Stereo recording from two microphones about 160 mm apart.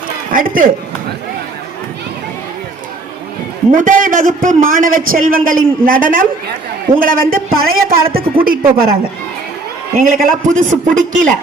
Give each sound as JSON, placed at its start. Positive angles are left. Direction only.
{"t": 0.3, "sound": "a man's voice", "side_deg": -60}
{"t": 3.7, "sound": "a man's voice", "side_deg": -55}
{"t": 10.0, "sound": "a man's voice", "side_deg": -60}